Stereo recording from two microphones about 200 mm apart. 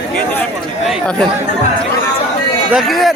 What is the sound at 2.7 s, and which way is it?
Speech, centre (ahead or behind).